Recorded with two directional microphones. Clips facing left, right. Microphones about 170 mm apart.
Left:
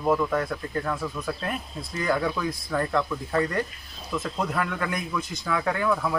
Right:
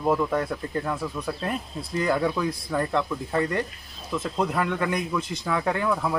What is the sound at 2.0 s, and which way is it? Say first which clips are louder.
A man's voice: right 2 dB; 25° right (ahead or behind).